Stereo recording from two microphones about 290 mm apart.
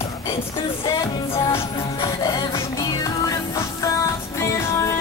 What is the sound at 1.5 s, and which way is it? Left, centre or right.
Music, centre.